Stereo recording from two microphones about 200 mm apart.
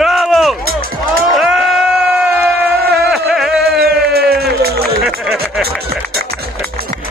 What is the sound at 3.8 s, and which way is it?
Music, 50° right (ahead or behind).